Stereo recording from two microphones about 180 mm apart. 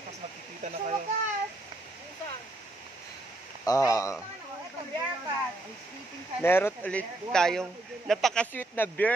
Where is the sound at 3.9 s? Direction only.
15° left (ahead or behind).